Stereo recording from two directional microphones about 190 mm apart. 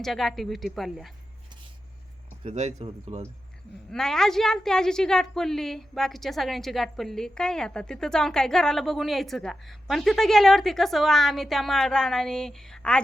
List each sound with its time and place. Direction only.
0.0 s a woman's voice: centre (ahead or behind)
2.4 s speech: 35° right (ahead or behind)
3.9 s a woman's voice: 5° left (ahead or behind)